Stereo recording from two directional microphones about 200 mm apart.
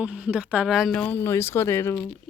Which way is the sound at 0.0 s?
5° right (ahead or behind).